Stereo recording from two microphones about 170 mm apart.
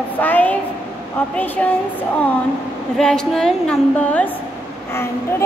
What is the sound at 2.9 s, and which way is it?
A woman's voice, 5° left (ahead or behind).